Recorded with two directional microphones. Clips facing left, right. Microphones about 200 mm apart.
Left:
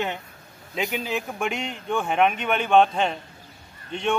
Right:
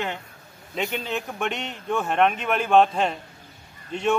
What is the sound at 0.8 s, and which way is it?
Speech, centre (ahead or behind).